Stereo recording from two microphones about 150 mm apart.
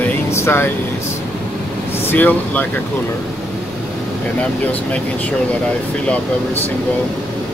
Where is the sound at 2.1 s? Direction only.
10° left (ahead or behind).